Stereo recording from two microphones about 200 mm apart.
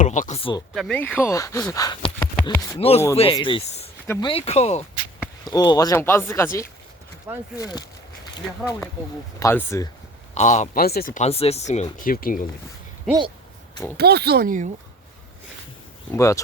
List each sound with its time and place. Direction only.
0.0 s speech: 40° left (ahead or behind)
0.7 s speech: centre (ahead or behind); by 2.1 s 25° left (ahead or behind)
2.3 s speech: 10° left (ahead or behind)
2.7 s speech: 30° left (ahead or behind)
4.0 s speech: 10° left (ahead or behind)
4.3 s speech: 30° left (ahead or behind)
5.5 s speech: 20° left (ahead or behind)
7.3 s speech: 10° right (ahead or behind)
7.6 s a sound: 20° left (ahead or behind)
9.4 s speech: 10° left (ahead or behind)
10.3 s speech: 35° left (ahead or behind)
10.8 s speech: 50° left (ahead or behind)
13.9 s speech: 55° right (ahead or behind)
16.1 s speech: 15° left (ahead or behind)